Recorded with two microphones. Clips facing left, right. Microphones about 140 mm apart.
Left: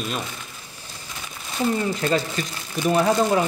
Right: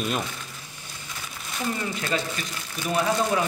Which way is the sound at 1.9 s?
35° left (ahead or behind).